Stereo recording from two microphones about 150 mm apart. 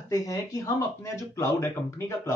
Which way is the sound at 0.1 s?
20° left (ahead or behind).